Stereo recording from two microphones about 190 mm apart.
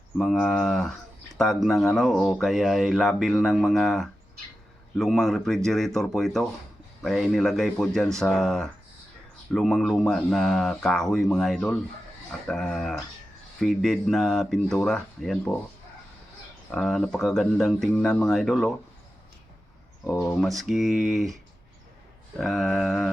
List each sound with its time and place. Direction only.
0.2 s speech: centre (ahead or behind)
16.7 s speech: centre (ahead or behind)
20.1 s speech: 15° left (ahead or behind)
20.4 s speech: centre (ahead or behind)
22.4 s speech: centre (ahead or behind)